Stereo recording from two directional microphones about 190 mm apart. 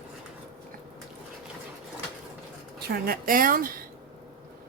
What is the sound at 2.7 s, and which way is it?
A woman's voice, 60° right (ahead or behind).